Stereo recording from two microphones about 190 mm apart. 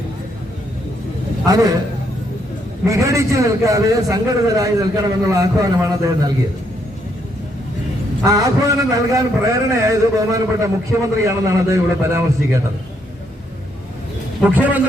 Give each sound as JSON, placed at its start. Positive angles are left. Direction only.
{"t": 1.5, "sound": "a man's voice", "side_deg": -20}
{"t": 2.8, "sound": "a man's voice", "side_deg": -15}
{"t": 8.2, "sound": "a man's voice", "side_deg": -20}
{"t": 14.4, "sound": "a man's voice", "side_deg": -10}